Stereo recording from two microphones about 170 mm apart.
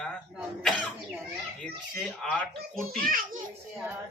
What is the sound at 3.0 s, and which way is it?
Speech, 55° right (ahead or behind).